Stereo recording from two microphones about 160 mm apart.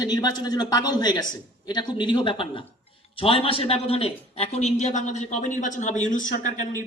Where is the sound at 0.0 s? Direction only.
25° left (ahead or behind); by 6.5 s 55° left (ahead or behind).